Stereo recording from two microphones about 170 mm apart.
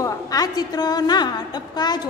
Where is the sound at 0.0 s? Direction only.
20° left (ahead or behind).